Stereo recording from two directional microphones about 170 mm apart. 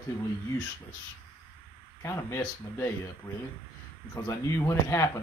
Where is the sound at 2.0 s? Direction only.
20° left (ahead or behind).